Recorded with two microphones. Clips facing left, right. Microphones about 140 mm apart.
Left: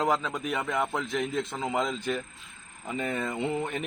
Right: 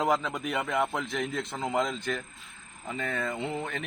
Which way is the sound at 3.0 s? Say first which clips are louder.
Left 2 dB; 15° left (ahead or behind).